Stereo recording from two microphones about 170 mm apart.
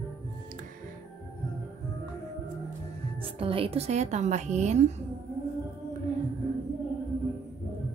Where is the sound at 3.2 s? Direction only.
30° right (ahead or behind).